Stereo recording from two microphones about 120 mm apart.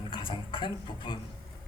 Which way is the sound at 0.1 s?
45° left (ahead or behind).